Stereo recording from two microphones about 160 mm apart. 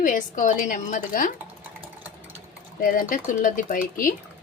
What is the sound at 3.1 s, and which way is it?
A woman's voice, 55° left (ahead or behind).